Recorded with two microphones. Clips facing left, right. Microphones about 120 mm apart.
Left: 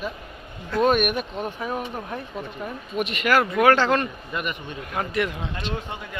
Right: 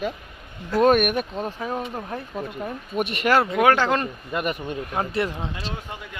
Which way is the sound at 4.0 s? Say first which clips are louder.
Right 1 dB; 40° right (ahead or behind).